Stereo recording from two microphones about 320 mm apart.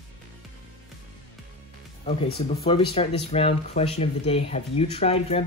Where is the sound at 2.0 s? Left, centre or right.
Left.